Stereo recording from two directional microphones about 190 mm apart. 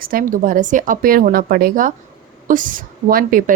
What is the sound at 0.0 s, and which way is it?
Speech, 50° right (ahead or behind).